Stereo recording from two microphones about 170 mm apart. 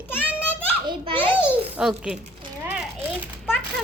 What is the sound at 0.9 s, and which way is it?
Children playing, 30° right (ahead or behind).